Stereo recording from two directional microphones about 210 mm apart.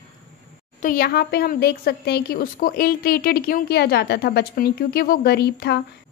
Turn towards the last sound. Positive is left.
turn(degrees=50)  # may be behind; listen again after turning